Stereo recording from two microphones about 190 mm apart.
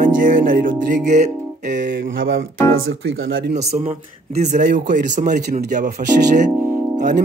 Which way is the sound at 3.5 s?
35° right (ahead or behind).